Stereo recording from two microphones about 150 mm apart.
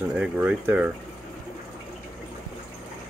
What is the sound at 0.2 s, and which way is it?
Speech, 10° right (ahead or behind).